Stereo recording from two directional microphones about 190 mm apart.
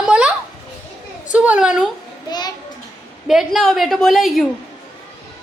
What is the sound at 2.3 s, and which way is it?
Speech, 20° left (ahead or behind).